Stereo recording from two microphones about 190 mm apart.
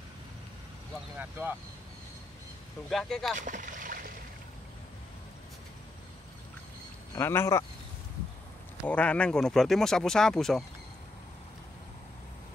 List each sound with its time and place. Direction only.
1.1 s speech: 10° right (ahead or behind)
2.9 s speech: centre (ahead or behind)
3.3 s boat: 45° right (ahead or behind)
7.2 s speech: 15° left (ahead or behind)
8.8 s speech: 5° left (ahead or behind)